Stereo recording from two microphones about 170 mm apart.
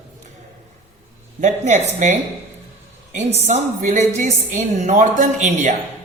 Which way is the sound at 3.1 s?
40° right (ahead or behind).